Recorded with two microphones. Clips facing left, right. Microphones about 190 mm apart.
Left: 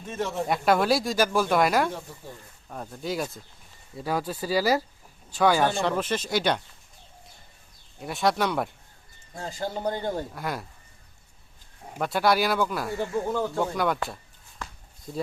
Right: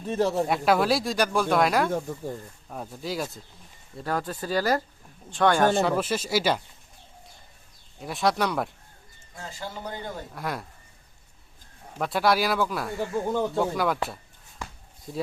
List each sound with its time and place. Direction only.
0.0 s speech: 35° right (ahead or behind)
0.4 s speech: centre (ahead or behind)
7.9 s speech: centre (ahead or behind)
9.3 s a man's voice: 35° left (ahead or behind)
10.3 s speech: centre (ahead or behind)
11.9 s speech: centre (ahead or behind)
13.3 s speech: 20° right (ahead or behind)
13.6 s speech: centre (ahead or behind)